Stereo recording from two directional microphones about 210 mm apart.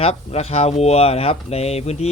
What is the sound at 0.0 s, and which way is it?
Speech, 30° left (ahead or behind).